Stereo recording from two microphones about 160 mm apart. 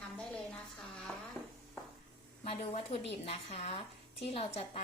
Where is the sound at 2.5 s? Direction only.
35° left (ahead or behind).